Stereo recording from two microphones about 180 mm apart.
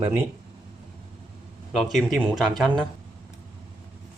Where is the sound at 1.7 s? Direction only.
Centre (ahead or behind).